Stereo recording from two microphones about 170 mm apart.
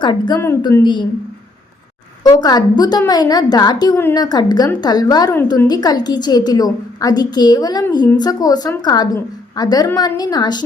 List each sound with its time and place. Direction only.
0.0 s a woman's voice: 25° left (ahead or behind)
2.2 s a woman's voice: 25° left (ahead or behind)